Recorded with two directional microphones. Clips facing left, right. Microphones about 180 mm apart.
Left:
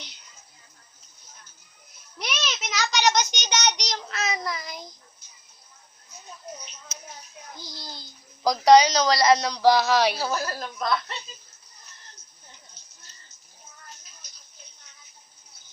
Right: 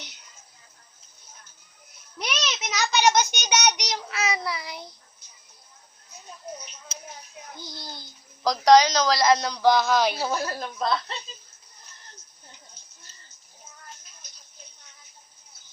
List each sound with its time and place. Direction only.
2.4 s child singing: 10° right (ahead or behind)
7.6 s a child's voice: 60° right (ahead or behind)
8.4 s a woman's voice: centre (ahead or behind)
10.2 s a woman's voice: 25° right (ahead or behind)